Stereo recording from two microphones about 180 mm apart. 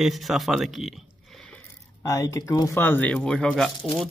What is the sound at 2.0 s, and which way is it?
Speech, 20° left (ahead or behind).